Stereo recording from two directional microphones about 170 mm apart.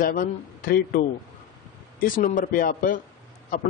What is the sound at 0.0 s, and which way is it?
A man's voice, 55° left (ahead or behind).